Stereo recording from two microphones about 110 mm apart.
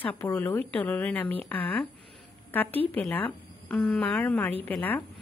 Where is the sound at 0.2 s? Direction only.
20° left (ahead or behind).